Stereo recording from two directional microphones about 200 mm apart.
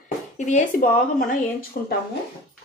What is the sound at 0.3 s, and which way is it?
Speech, 40° left (ahead or behind).